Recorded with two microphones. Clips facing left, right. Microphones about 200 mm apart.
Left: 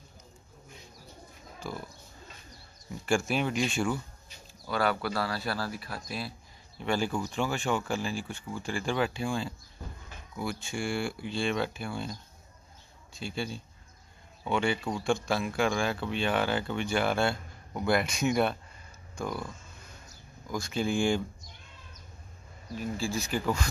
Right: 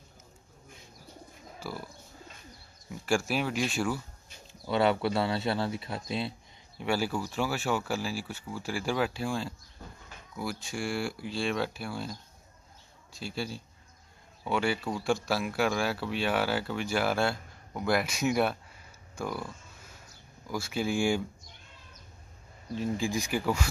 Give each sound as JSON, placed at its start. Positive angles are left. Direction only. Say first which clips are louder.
{"t": 1.6, "sound": "speech", "louder": "left 1 dB", "side_deg": -5}
{"t": 3.1, "sound": "speech", "louder": "left 1 dB", "side_deg": 0}
{"t": 4.5, "sound": "speech", "louder": "right 3 dB", "side_deg": -25}
{"t": 6.8, "sound": "speech", "louder": "even", "side_deg": -10}
{"t": 22.8, "sound": "speech", "louder": "right 2 dB", "side_deg": -15}